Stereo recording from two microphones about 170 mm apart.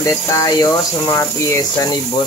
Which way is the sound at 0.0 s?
20° left (ahead or behind).